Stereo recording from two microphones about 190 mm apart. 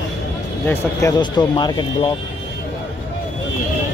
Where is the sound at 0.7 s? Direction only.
15° left (ahead or behind).